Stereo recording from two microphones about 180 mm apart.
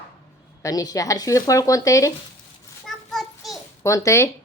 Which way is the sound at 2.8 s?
Centre (ahead or behind).